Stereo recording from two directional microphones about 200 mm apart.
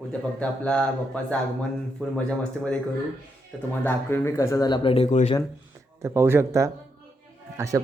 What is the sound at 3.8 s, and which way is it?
Speech, 10° left (ahead or behind).